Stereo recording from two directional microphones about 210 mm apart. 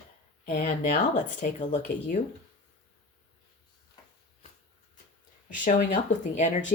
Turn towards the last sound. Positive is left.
turn(degrees=35)  # may be behind; listen again after turning